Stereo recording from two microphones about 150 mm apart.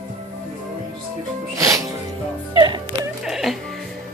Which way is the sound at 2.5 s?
30° right (ahead or behind).